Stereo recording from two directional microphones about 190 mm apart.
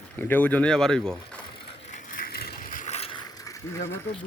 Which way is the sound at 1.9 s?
45° left (ahead or behind).